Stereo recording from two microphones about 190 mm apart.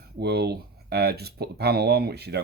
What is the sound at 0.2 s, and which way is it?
Speech, 55° right (ahead or behind).